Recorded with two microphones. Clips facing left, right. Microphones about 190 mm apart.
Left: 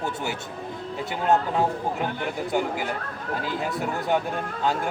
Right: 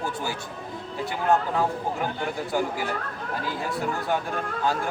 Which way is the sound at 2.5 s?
20° left (ahead or behind).